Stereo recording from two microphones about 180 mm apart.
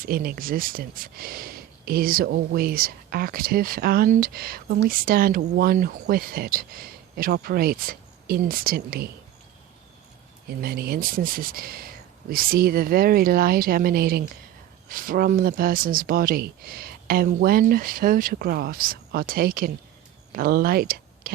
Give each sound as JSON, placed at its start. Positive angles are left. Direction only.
{"t": 0.0, "sound": "speech", "side_deg": -55}
{"t": 10.5, "sound": "speech", "side_deg": -60}